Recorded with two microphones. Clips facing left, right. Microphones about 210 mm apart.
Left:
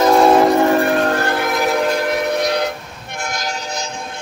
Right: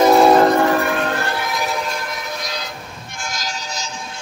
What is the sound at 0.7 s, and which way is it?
Train, 35° left (ahead or behind).